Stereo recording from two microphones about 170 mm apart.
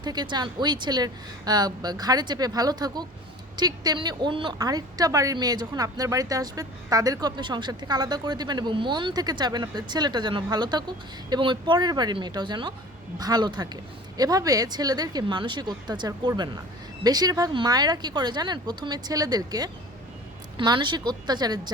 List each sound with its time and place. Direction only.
0.0 s a woman's voice: 25° right (ahead or behind)